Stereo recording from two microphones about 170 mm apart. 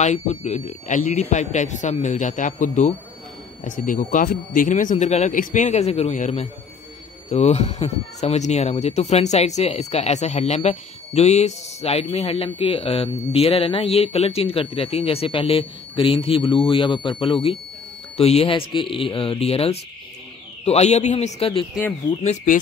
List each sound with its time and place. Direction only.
0.0 s speech: 40° left (ahead or behind)